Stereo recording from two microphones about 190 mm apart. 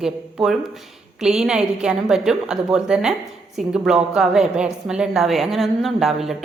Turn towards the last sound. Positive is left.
turn(degrees=0)  # may be behind; listen again after turning